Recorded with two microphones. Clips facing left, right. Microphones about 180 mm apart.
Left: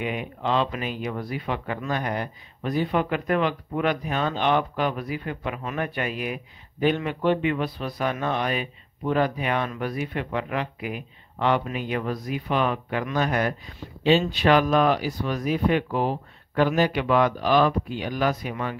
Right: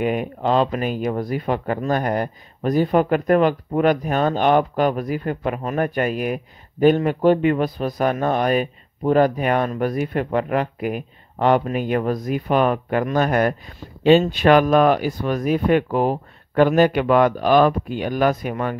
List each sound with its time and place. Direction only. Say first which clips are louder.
0.0 s speech: right 7 dB; 45° right (ahead or behind)